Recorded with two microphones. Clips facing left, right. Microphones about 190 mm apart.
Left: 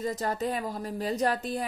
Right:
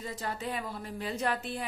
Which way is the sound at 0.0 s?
40° left (ahead or behind).